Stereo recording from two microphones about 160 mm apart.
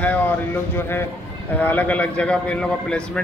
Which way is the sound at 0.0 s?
10° left (ahead or behind).